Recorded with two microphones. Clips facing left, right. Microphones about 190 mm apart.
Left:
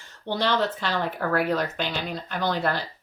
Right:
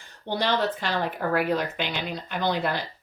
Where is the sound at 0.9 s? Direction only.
15° right (ahead or behind).